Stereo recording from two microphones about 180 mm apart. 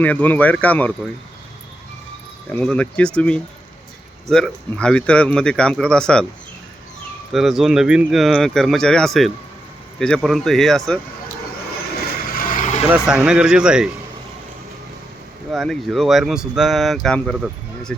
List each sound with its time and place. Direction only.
0.0 s speech: 10° left (ahead or behind)
2.5 s speech: 5° left (ahead or behind)
7.3 s speech: centre (ahead or behind)
12.3 s vehicle: 50° left (ahead or behind)
12.8 s speech: 5° right (ahead or behind)
15.5 s speech: centre (ahead or behind)